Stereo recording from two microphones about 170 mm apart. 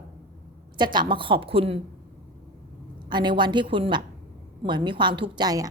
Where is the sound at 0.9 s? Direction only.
30° right (ahead or behind).